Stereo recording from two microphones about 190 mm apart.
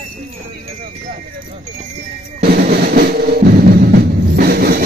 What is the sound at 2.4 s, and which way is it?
Music, 55° right (ahead or behind).